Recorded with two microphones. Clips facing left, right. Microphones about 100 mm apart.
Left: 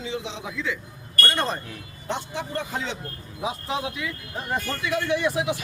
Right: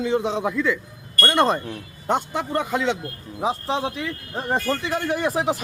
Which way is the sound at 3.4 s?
30° right (ahead or behind).